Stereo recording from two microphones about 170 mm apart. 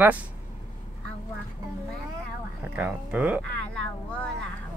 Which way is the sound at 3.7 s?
5° left (ahead or behind).